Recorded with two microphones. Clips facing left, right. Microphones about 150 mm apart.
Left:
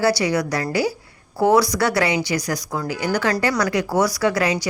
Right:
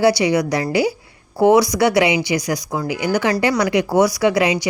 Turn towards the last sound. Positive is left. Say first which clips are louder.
# right 3 dB
turn(degrees=-15)  # may be behind; listen again after turning